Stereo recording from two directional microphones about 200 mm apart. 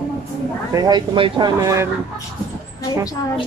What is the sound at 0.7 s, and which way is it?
Speech, 20° right (ahead or behind).